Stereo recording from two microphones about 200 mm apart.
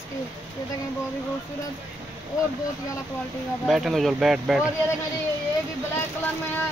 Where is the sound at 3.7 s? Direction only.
Centre (ahead or behind).